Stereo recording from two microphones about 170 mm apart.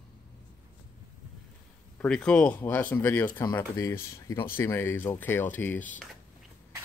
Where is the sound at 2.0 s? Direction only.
5° left (ahead or behind).